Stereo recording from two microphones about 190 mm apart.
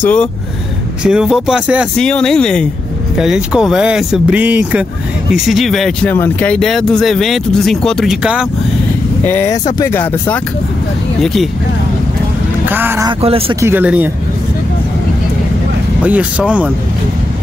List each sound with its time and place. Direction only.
0.0 s speech: 5° left (ahead or behind)
1.0 s speech: 5° right (ahead or behind)
9.2 s speech: 10° left (ahead or behind)
12.6 s speech: 10° right (ahead or behind)
13.2 s speech: 30° right (ahead or behind)
13.6 s speech: 10° right (ahead or behind)
16.0 s speech: 5° right (ahead or behind)